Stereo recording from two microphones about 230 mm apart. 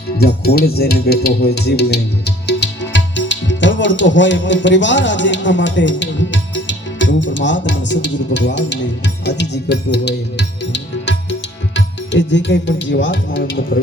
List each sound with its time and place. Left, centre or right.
0.2 s speech: left